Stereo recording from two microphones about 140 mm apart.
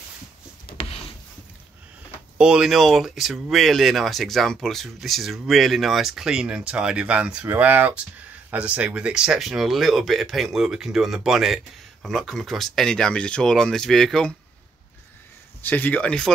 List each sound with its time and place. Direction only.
0.7 s a sound: 45° left (ahead or behind)
2.3 s speech: 5° right (ahead or behind)
15.6 s speech: 10° left (ahead or behind)